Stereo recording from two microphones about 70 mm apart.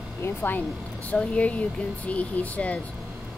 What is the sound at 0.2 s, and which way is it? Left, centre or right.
Speech, left.